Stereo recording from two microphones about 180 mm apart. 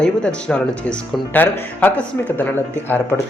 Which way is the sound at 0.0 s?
5° left (ahead or behind).